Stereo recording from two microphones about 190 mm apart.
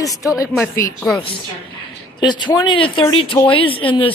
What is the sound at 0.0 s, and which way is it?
Speech, 15° left (ahead or behind).